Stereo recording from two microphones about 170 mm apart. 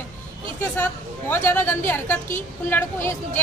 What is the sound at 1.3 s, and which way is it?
Speech, 15° left (ahead or behind).